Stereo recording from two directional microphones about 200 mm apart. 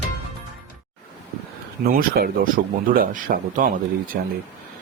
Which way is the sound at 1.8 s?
45° right (ahead or behind).